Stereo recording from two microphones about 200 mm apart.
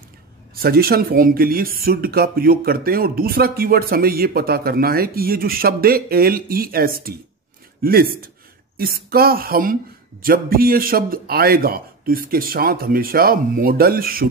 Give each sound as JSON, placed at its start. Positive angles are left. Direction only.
{"t": 0.6, "sound": "speech", "side_deg": -50}